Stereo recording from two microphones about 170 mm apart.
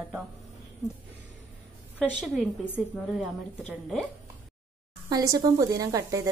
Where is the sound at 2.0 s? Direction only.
Centre (ahead or behind).